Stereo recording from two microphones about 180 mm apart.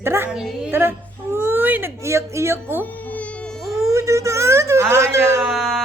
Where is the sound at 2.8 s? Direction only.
10° left (ahead or behind).